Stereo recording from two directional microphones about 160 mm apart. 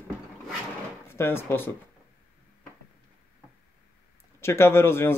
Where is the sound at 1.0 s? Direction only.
15° left (ahead or behind).